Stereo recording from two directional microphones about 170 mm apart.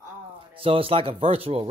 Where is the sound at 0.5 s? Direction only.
35° right (ahead or behind).